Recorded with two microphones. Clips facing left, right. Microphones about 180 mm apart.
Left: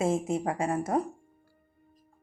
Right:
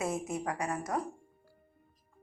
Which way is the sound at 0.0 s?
25° left (ahead or behind).